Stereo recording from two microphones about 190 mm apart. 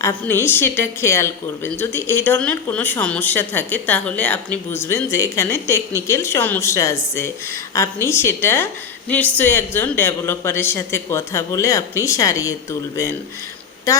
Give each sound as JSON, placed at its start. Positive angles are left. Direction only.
{"t": 0.0, "sound": "a woman's voice", "side_deg": 15}